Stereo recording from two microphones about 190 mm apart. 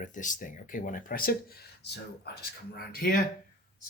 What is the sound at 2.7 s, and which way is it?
Speech, 55° left (ahead or behind).